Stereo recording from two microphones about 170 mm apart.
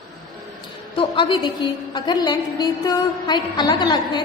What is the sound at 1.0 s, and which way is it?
A woman's voice, 30° left (ahead or behind).